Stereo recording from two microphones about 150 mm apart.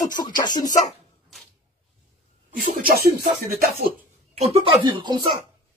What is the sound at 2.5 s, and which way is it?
Speech, 80° right.